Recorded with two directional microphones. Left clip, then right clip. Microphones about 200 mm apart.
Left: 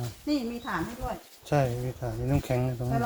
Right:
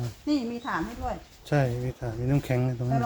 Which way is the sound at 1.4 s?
10° right (ahead or behind).